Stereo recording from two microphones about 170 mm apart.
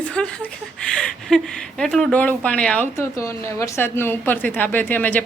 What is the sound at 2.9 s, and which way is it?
A woman's voice, 15° left (ahead or behind).